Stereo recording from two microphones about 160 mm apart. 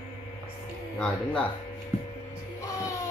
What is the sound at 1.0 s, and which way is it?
Mantra, 5° left (ahead or behind).